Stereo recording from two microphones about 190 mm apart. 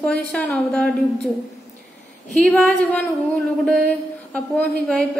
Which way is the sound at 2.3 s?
5° left (ahead or behind).